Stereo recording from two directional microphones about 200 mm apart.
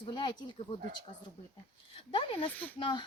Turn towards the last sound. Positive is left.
turn(degrees=25)  # may be behind; listen again after turning